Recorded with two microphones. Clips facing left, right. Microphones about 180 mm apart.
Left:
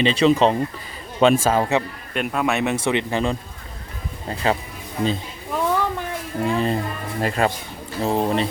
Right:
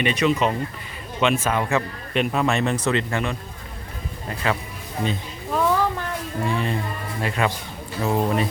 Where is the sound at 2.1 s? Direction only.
Centre (ahead or behind).